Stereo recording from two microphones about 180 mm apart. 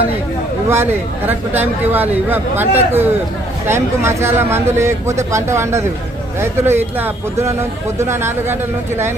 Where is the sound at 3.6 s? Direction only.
15° right (ahead or behind).